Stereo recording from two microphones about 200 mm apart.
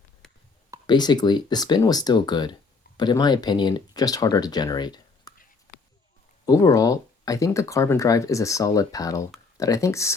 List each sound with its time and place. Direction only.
0.9 s speech: 20° left (ahead or behind)
6.4 s speech: 20° left (ahead or behind)